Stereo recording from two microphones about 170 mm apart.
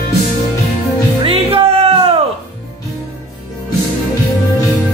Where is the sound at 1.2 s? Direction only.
35° right (ahead or behind).